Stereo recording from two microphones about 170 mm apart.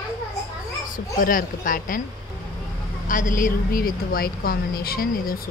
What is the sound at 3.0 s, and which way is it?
A woman's voice, 50° left (ahead or behind).